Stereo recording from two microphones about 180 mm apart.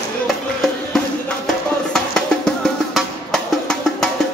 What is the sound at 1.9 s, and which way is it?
Music, 5° left (ahead or behind).